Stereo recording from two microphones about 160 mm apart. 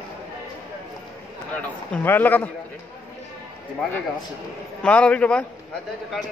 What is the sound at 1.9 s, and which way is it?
Speech, 15° left (ahead or behind).